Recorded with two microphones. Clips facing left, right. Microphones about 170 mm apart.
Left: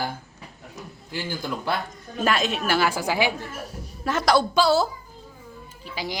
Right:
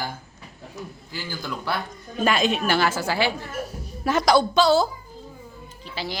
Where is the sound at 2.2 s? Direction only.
Centre (ahead or behind).